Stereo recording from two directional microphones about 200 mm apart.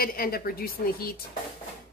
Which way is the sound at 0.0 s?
50° left (ahead or behind).